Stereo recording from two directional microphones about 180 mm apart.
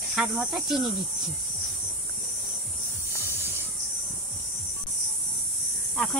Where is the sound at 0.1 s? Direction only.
5° right (ahead or behind).